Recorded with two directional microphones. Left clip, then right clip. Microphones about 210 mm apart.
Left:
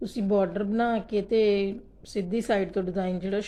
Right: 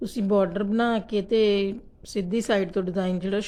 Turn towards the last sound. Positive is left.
turn(degrees=-15)  # may be behind; listen again after turning